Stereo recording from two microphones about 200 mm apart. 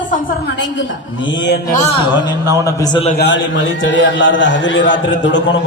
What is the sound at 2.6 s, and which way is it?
Speech, 20° left (ahead or behind).